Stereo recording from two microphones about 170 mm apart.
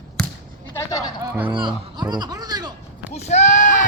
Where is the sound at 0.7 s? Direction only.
20° left (ahead or behind).